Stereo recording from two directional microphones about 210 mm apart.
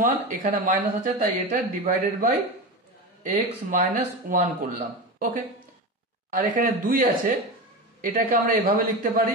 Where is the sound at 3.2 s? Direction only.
40° right (ahead or behind).